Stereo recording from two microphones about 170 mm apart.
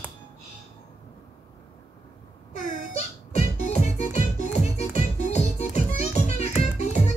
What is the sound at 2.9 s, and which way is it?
Music, 40° left (ahead or behind).